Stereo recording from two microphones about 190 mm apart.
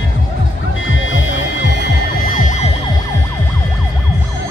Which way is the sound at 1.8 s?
45° left (ahead or behind).